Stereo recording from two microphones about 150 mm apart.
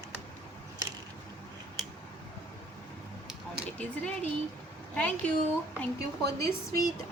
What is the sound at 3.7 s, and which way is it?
Speech, 10° left (ahead or behind).